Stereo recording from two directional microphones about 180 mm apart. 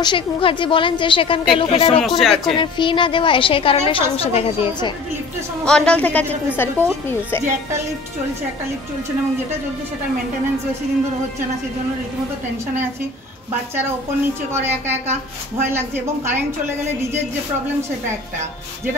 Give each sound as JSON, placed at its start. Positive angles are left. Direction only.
{"t": 0.0, "sound": "a woman's voice", "side_deg": 30}
{"t": 2.0, "sound": "speech", "side_deg": 0}
{"t": 2.5, "sound": "a woman's voice", "side_deg": 25}
{"t": 5.7, "sound": "a woman's voice", "side_deg": 5}